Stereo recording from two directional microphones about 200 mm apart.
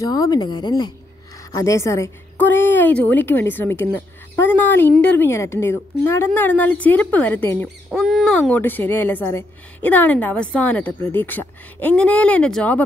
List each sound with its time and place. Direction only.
0.0 s a woman's voice: 20° left (ahead or behind)